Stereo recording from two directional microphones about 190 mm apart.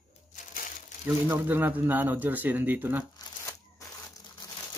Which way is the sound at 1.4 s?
10° right (ahead or behind).